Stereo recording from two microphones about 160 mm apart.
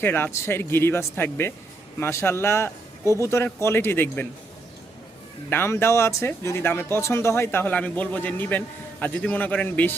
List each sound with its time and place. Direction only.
0.0 s speech: 15° left (ahead or behind)
5.5 s speech: 15° left (ahead or behind)